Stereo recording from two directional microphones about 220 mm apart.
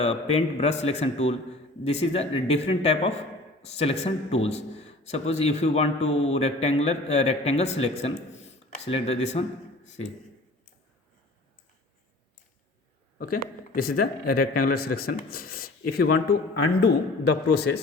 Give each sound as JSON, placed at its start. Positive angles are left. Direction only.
{"t": 0.0, "sound": "a man's voice", "side_deg": 30}
{"t": 13.1, "sound": "a man's voice", "side_deg": 40}